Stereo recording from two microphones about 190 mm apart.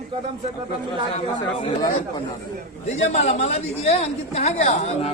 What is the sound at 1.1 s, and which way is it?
Speech, 30° left (ahead or behind).